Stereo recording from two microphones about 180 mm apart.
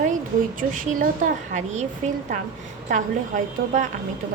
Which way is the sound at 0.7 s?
50° right (ahead or behind).